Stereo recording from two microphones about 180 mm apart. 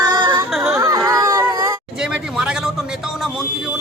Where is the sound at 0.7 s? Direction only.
20° right (ahead or behind).